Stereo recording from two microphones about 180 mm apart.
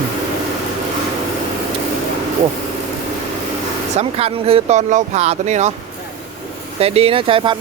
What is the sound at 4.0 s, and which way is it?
Speech, 35° right (ahead or behind).